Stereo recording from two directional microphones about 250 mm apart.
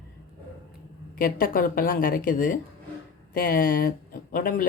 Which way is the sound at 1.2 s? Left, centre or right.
Left.